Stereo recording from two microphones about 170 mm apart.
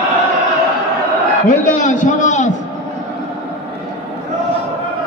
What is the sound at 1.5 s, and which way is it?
A man's voice, 50° left (ahead or behind).